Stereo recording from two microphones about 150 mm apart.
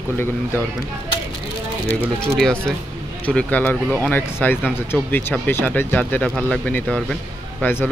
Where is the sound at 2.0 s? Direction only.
5° left (ahead or behind).